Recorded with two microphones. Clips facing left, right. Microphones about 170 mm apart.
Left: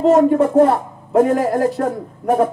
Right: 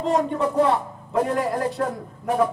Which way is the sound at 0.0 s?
45° left (ahead or behind).